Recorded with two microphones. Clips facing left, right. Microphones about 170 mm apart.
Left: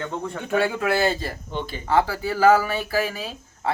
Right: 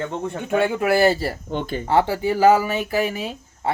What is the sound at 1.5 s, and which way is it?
Speech, 50° right (ahead or behind).